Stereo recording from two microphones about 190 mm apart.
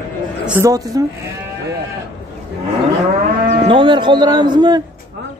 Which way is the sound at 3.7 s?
25° right (ahead or behind).